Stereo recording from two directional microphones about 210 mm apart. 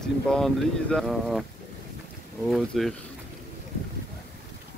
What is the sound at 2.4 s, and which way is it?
Speech, centre (ahead or behind).